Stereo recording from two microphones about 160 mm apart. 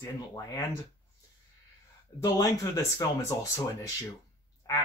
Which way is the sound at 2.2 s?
20° left (ahead or behind).